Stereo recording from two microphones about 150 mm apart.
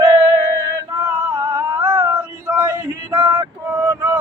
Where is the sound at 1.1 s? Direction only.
20° right (ahead or behind).